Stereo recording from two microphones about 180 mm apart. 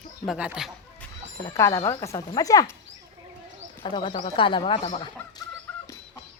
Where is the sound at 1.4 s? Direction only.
15° left (ahead or behind).